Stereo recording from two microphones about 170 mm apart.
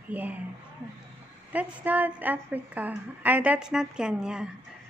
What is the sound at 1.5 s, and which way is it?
A woman's voice, 10° right (ahead or behind).